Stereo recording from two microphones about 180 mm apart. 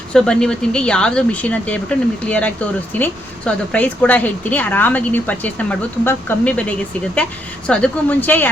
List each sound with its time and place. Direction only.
0.1 s speech: 5° left (ahead or behind)